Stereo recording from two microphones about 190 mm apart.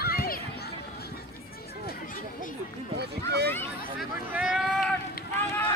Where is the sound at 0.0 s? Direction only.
55° left (ahead or behind).